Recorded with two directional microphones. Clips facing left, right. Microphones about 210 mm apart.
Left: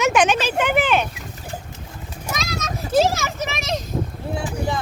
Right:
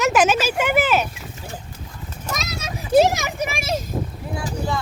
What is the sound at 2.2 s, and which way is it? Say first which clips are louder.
A child's voice: left 2 dB; centre (ahead or behind).